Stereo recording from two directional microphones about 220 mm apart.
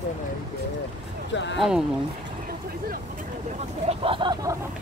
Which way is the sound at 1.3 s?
55° left (ahead or behind).